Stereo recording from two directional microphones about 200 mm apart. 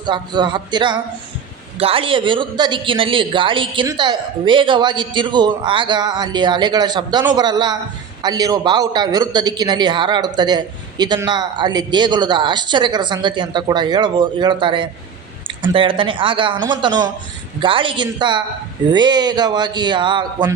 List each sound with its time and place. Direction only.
0.0 s a man's voice: 20° right (ahead or behind)